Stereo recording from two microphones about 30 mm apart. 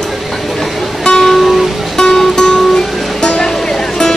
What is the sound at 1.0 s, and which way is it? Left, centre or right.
Music, left.